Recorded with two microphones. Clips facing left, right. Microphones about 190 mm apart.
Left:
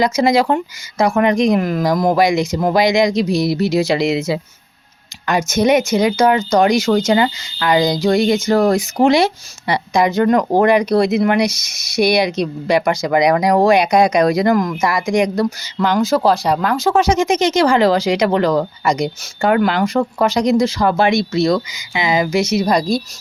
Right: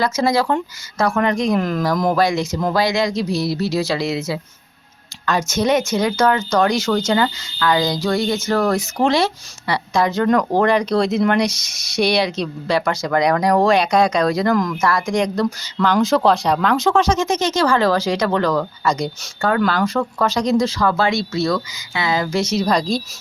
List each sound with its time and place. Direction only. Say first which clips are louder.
0.0 s speech: left 4 dB; 15° left (ahead or behind)